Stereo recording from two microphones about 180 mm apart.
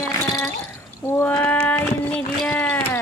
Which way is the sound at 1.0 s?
15° left (ahead or behind).